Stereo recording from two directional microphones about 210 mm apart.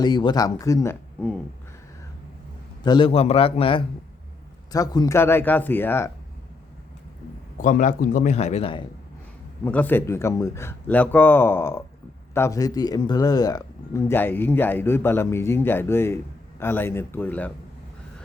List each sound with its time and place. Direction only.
0.0 s a man's voice: 20° left (ahead or behind)
2.8 s a man's voice: 20° left (ahead or behind)
7.6 s a man's voice: 40° left (ahead or behind)
9.6 s speech: 10° left (ahead or behind)